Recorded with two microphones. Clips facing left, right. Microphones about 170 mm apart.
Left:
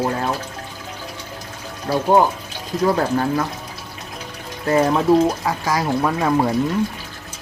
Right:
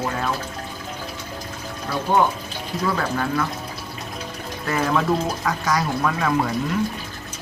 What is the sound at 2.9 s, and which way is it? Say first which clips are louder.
Speech: left 4 dB; 35° left (ahead or behind).